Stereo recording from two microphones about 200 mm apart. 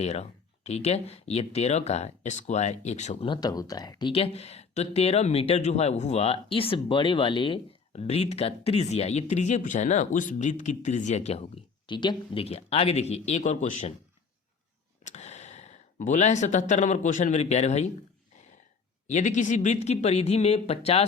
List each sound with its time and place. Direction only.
0.0 s speech: 35° left (ahead or behind)
15.0 s speech: 35° left (ahead or behind)
19.0 s speech: 35° left (ahead or behind)